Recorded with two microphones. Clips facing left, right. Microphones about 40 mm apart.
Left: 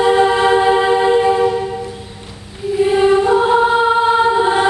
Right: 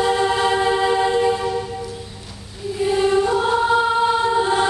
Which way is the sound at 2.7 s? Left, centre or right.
Left.